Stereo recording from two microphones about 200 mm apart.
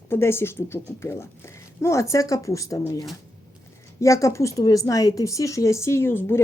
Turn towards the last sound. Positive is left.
turn(degrees=10)  # may be behind; listen again after turning